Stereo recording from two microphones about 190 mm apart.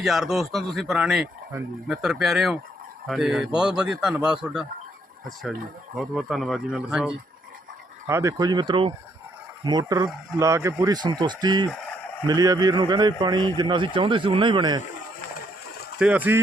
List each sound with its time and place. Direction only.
0.0 s a man's voice: centre (ahead or behind)
6.0 s a man's voice: centre (ahead or behind)
8.0 s a man's voice: 15° right (ahead or behind)
16.0 s speech: 5° right (ahead or behind)